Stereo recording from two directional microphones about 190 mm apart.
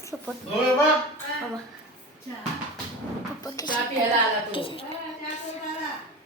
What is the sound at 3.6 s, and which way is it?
Speech, 20° left (ahead or behind).